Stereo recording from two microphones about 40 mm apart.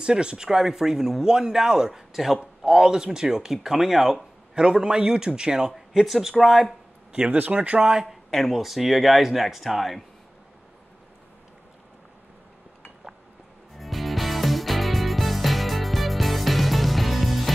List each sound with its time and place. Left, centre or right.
0.0 s speech: right; by 2.4 s centre
2.6 s speech: centre
4.6 s a man's voice: centre
5.7 s speech: centre
7.2 s speech: right
7.5 s a man's voice: right
7.9 s speech: centre
13.7 s music: centre